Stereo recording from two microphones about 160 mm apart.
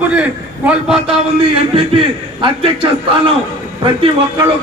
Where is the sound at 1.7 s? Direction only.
35° right (ahead or behind).